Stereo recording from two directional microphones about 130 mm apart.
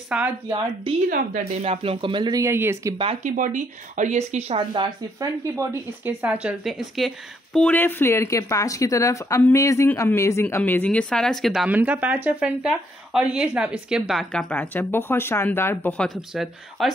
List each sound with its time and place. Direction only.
0.1 s speech: 5° right (ahead or behind)
1.6 s speech: 50° right (ahead or behind)
2.4 s speech: 20° right (ahead or behind)
3.3 s speech: 80° right; by 4.9 s 40° right (ahead or behind)
5.2 s speech: 25° right (ahead or behind)
6.0 s speech: 10° right (ahead or behind)
6.7 s speech: centre (ahead or behind)
14.3 s speech: 10° left (ahead or behind)
16.3 s speech: centre (ahead or behind)